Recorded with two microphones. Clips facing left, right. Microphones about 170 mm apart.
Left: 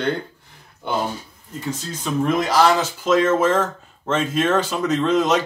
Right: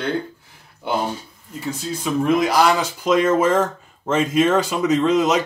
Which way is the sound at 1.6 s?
10° right (ahead or behind).